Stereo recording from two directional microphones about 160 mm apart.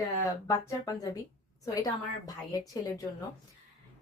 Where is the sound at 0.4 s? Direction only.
20° left (ahead or behind).